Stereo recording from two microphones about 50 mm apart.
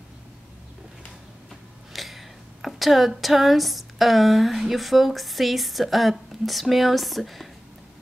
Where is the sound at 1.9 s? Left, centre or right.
Centre.